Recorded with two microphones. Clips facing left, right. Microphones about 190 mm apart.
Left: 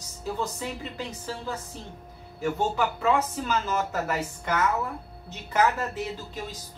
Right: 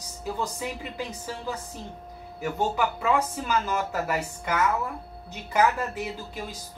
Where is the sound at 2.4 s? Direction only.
10° right (ahead or behind).